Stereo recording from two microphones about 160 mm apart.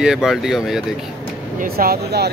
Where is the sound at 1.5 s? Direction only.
70° right (ahead or behind).